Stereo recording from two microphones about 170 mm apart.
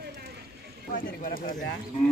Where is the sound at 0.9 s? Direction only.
55° left (ahead or behind).